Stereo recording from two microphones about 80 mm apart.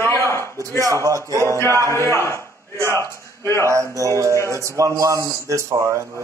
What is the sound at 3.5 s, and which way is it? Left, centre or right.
A man's voice, right.